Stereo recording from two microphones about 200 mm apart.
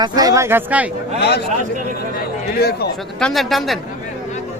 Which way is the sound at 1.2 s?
55° left (ahead or behind).